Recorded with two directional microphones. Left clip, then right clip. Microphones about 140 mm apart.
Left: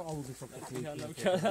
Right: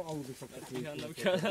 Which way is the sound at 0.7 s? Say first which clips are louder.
Right 1 dB; 40° right (ahead or behind).